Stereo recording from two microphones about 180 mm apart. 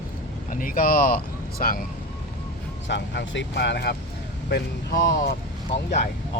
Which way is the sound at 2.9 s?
80° left.